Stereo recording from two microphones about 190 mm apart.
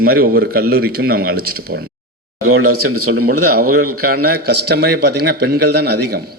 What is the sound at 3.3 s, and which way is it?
A man's voice, 50° right (ahead or behind).